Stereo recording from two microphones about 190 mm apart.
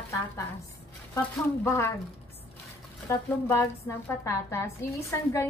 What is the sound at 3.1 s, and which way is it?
A woman's voice, 15° left (ahead or behind).